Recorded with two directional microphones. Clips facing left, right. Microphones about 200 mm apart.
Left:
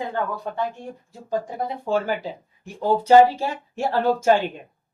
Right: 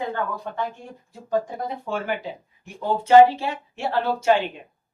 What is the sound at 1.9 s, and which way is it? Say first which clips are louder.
Speech: left 5 dB; 35° left (ahead or behind).